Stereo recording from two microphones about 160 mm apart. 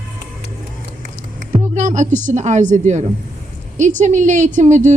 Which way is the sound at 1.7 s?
50° right (ahead or behind).